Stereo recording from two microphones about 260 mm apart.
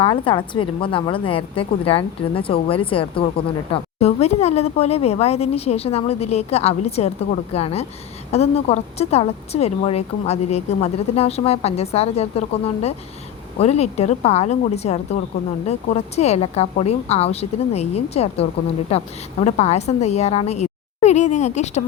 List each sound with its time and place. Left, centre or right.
0.0 s a woman's voice: centre